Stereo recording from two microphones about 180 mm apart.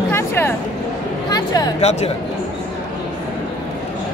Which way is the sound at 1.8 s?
35° left (ahead or behind).